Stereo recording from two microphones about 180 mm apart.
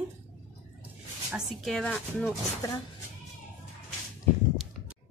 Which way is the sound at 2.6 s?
20° left (ahead or behind).